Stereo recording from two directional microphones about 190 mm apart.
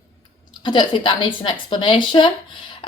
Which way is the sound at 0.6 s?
25° left (ahead or behind).